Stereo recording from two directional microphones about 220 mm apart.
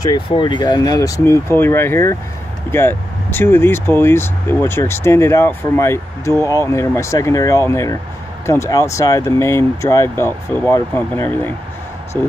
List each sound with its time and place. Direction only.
0.0 s speech: 20° left (ahead or behind)
12.1 s speech: 20° right (ahead or behind)